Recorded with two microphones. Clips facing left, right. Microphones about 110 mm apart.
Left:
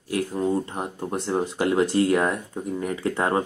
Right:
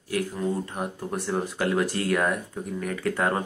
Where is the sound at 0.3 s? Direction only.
30° left (ahead or behind).